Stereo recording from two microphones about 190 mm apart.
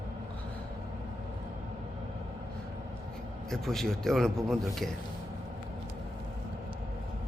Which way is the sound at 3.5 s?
Centre (ahead or behind).